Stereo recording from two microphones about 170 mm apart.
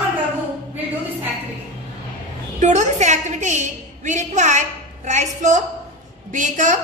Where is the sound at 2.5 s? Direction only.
45° right (ahead or behind).